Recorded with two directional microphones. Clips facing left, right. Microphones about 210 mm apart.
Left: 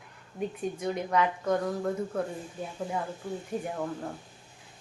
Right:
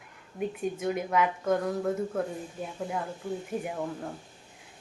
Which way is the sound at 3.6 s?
5° right (ahead or behind).